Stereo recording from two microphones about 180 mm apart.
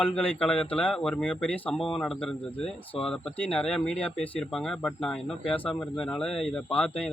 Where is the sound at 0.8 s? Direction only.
5° left (ahead or behind).